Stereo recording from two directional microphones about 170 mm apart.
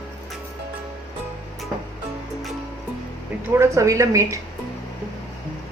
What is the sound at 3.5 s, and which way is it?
Speech, 15° right (ahead or behind).